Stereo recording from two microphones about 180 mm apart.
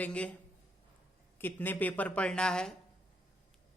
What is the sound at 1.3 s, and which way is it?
Speech, 10° left (ahead or behind).